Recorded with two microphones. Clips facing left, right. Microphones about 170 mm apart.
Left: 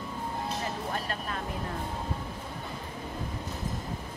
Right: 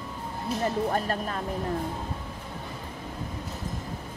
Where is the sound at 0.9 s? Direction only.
40° right (ahead or behind).